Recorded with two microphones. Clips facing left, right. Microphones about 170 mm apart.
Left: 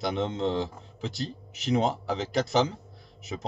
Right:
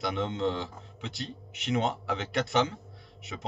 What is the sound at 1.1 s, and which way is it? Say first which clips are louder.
Speech: left 5 dB; centre (ahead or behind).